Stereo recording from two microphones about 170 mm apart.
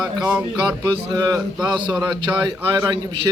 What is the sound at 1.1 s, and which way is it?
A man's voice, 25° right (ahead or behind).